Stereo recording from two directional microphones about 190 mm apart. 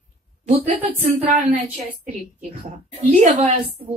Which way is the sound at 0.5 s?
40° right (ahead or behind).